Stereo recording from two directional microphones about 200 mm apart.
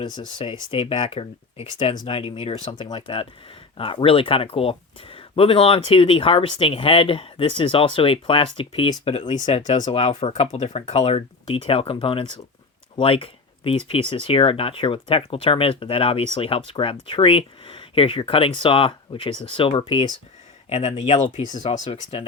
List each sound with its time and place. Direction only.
0.3 s speech: 25° left (ahead or behind)
21.6 s speech: 25° left (ahead or behind)